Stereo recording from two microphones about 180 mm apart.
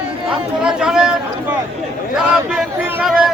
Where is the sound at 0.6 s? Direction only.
5° right (ahead or behind).